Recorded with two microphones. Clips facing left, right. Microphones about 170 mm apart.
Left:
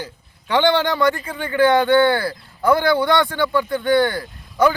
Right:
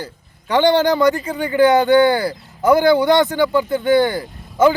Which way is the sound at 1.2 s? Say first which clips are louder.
Right 3 dB; 20° right (ahead or behind).